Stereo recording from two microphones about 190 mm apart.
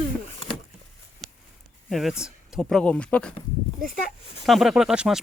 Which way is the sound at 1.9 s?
Centre (ahead or behind).